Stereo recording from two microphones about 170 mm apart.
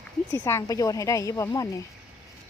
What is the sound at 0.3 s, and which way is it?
Speech, 15° left (ahead or behind).